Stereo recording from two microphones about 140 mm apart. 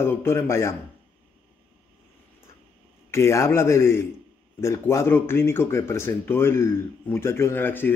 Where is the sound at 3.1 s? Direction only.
20° left (ahead or behind).